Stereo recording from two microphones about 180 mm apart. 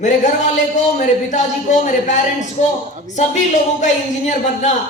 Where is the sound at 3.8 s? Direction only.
40° left (ahead or behind).